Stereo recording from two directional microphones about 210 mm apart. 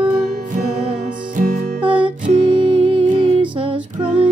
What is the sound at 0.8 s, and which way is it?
Music, 40° right (ahead or behind).